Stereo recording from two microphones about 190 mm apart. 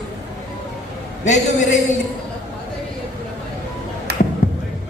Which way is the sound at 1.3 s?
40° left (ahead or behind).